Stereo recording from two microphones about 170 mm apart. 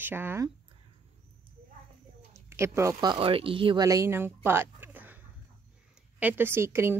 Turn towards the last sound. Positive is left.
turn(degrees=-15)  # may be behind; listen again after turning